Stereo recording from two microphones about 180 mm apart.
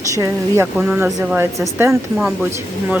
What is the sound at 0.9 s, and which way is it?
Speech, 5° right (ahead or behind).